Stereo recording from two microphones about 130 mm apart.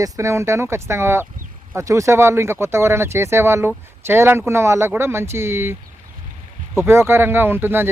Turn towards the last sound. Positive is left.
turn(degrees=-15)  # may be behind; listen again after turning